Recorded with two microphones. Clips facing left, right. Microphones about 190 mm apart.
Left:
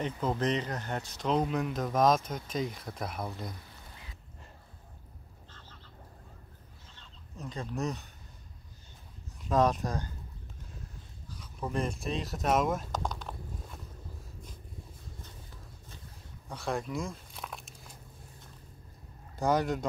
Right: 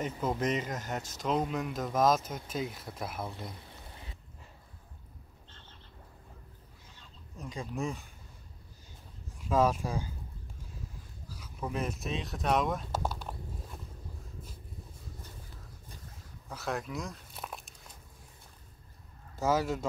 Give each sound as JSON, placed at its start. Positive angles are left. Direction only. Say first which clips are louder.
{"t": 0.0, "sound": "speech", "louder": "left 1 dB", "side_deg": -5}
{"t": 5.5, "sound": "frog", "louder": "left 3 dB", "side_deg": -25}
{"t": 7.0, "sound": "fowl", "louder": "left 1 dB", "side_deg": -10}
{"t": 9.5, "sound": "speech", "louder": "left 1 dB", "side_deg": -10}
{"t": 11.2, "sound": "speech", "louder": "even", "side_deg": -5}
{"t": 16.4, "sound": "biting", "louder": "left 2 dB", "side_deg": -5}
{"t": 19.3, "sound": "speech", "louder": "left 1 dB", "side_deg": -5}